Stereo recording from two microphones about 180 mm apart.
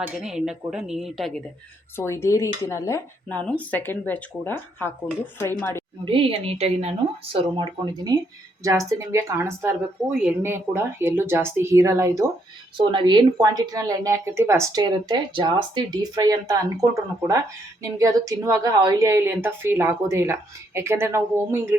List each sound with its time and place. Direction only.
0.0 s a woman's voice: 5° right (ahead or behind)
2.0 s speech: 15° left (ahead or behind)
6.1 s a woman's voice: 30° right (ahead or behind)
17.9 s speech: 20° right (ahead or behind)